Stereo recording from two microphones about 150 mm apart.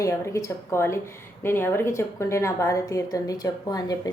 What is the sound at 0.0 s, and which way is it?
A woman's voice, 20° left (ahead or behind).